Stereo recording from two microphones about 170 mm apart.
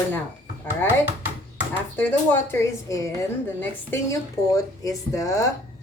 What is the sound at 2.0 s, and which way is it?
A woman's voice, 10° left (ahead or behind).